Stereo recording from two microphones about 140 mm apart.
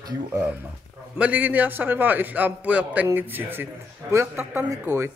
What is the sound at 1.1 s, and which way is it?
A man's voice, 10° right (ahead or behind).